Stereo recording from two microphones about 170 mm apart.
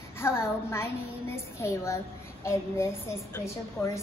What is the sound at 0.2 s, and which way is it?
A woman's voice, 15° left (ahead or behind).